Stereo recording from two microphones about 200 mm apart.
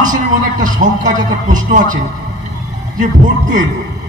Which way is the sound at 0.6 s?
40° right (ahead or behind).